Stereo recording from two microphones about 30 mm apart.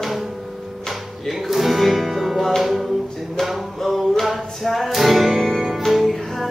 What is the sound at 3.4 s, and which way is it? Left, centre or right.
Music, centre.